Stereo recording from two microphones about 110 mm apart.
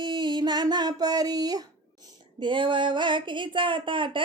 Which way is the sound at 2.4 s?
50° right (ahead or behind).